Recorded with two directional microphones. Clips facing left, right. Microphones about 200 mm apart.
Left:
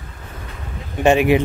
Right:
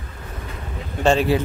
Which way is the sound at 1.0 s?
15° left (ahead or behind).